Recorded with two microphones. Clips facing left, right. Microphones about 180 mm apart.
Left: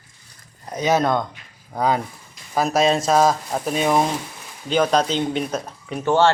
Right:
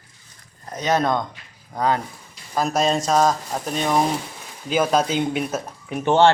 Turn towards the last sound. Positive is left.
turn(degrees=-20)  # may be behind; listen again after turning